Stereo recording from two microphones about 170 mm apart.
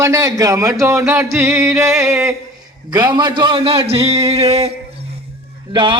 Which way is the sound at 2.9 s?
25° right (ahead or behind).